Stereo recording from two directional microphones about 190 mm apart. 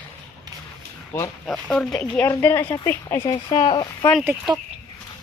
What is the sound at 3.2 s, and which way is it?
Speech, 25° left (ahead or behind).